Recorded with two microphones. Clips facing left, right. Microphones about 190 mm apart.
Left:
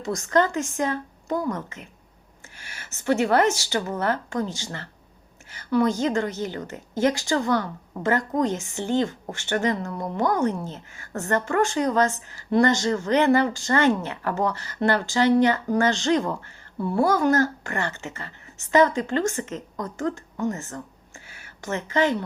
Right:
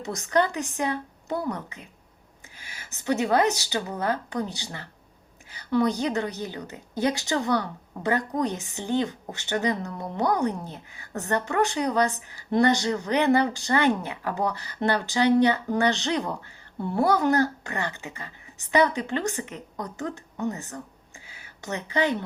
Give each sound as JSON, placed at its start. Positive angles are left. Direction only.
{"t": 0.0, "sound": "a woman's voice", "side_deg": -20}
{"t": 3.0, "sound": "a woman's voice", "side_deg": -15}
{"t": 21.2, "sound": "a sound", "side_deg": -20}